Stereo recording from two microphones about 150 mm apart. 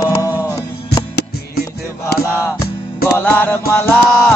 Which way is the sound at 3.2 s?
10° left (ahead or behind).